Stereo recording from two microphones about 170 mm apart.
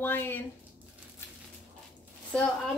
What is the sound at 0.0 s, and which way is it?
Speech, 10° left (ahead or behind).